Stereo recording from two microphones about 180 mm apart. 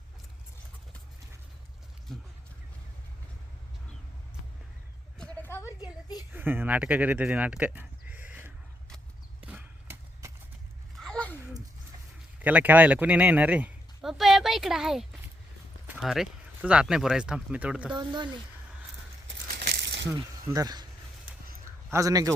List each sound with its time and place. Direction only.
2.1 s speech: centre (ahead or behind)
5.1 s a sound: 5° left (ahead or behind)
6.3 s speech: 10° right (ahead or behind)
9.4 s horse: 10° right (ahead or behind)
11.0 s a sound: 5° left (ahead or behind)
12.4 s speech: 10° right (ahead or behind)
17.9 s speech: 25° right (ahead or behind)
19.6 s crumpling: 70° right (ahead or behind)
20.1 s speech: 20° right (ahead or behind)
21.6 s a sound: 15° right (ahead or behind)